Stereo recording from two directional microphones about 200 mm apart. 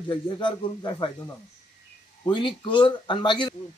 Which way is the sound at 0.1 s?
25° left (ahead or behind).